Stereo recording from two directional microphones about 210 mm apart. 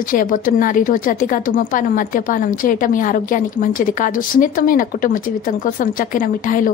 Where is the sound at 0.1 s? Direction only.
40° left (ahead or behind).